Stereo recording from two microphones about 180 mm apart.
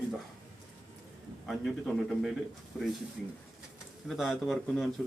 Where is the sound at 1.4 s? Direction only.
Centre (ahead or behind).